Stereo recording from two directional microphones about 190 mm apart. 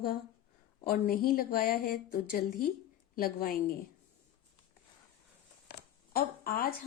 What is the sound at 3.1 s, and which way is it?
Speech, 50° left (ahead or behind).